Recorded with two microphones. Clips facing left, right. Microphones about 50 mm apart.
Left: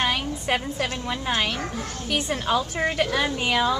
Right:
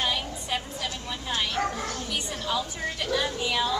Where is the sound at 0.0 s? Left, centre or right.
Left.